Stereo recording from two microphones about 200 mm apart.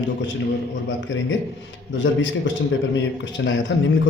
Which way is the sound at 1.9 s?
65° left (ahead or behind).